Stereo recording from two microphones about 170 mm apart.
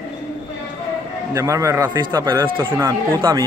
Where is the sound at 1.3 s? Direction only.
20° right (ahead or behind).